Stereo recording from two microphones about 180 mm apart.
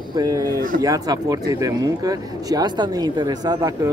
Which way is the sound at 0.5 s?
50° right (ahead or behind).